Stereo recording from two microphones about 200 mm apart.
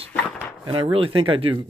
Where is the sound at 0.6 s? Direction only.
25° right (ahead or behind).